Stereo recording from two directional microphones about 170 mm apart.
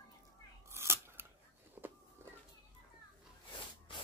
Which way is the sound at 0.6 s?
15° right (ahead or behind).